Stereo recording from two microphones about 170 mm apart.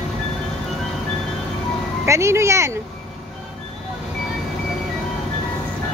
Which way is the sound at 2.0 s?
15° right (ahead or behind).